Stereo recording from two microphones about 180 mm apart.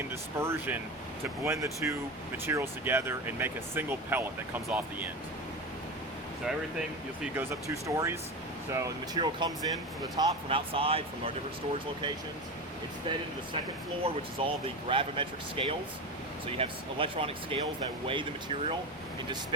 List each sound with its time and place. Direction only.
0.3 s speech: 15° right (ahead or behind)
6.4 s speech: 5° right (ahead or behind)
7.7 s speech: 15° right (ahead or behind); by 11.0 s 30° right (ahead or behind)
14.0 s speech: 30° right (ahead or behind)